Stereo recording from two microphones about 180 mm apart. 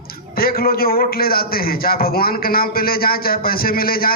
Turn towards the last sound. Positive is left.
turn(degrees=55)  # may be behind; listen again after turning